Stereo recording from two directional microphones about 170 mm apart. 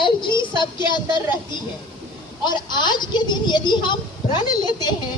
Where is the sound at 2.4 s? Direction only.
25° left (ahead or behind).